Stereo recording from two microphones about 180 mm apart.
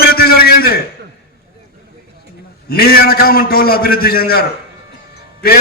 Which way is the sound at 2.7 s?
55° left (ahead or behind).